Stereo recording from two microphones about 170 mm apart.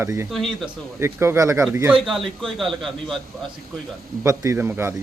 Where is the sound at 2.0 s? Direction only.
Centre (ahead or behind).